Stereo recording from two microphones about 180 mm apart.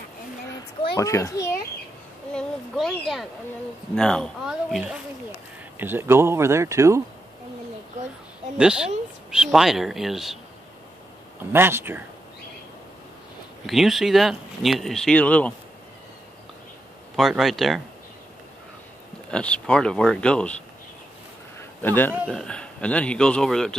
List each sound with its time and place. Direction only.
0.9 s a child's voice: 20° left (ahead or behind)
2.3 s speech: 5° left (ahead or behind)
5.8 s speech: 10° right (ahead or behind)
8.5 s speech: 5° right (ahead or behind)
11.5 s speech: 10° right (ahead or behind)
13.7 s speech: centre (ahead or behind)
17.2 s speech: centre (ahead or behind)
19.3 s speech: 5° left (ahead or behind)
21.5 s a sound: 10° left (ahead or behind)
22.3 s speech: 5° left (ahead or behind)